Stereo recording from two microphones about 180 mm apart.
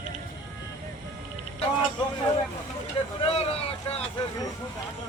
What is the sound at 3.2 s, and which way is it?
Vehicle, 35° left (ahead or behind).